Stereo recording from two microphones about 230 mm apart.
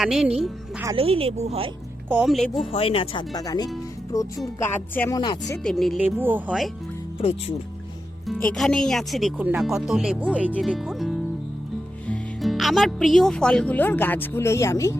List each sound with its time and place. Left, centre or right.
0.0 s speech: centre
0.9 s speech: right
2.0 s speech: centre
2.7 s speech: left
5.6 s speech: centre
7.2 s speech: left
8.3 s speech: centre